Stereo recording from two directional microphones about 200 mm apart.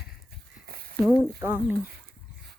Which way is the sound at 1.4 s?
10° right (ahead or behind).